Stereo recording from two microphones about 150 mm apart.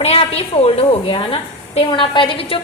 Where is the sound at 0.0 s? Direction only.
45° left (ahead or behind).